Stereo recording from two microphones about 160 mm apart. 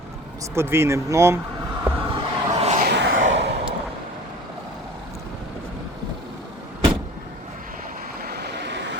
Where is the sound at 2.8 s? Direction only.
85° right.